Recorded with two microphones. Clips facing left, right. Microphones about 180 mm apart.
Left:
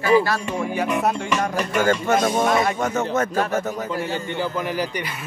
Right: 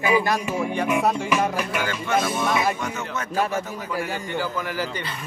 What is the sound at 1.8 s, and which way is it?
Speech, 45° left (ahead or behind).